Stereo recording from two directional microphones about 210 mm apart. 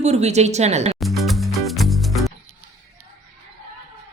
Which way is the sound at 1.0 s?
Centre (ahead or behind).